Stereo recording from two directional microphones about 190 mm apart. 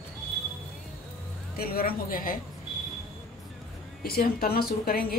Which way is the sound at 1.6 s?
50° left (ahead or behind).